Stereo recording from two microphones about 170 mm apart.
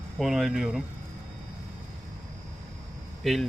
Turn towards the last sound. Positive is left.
turn(degrees=0)  # may be behind; listen again after turning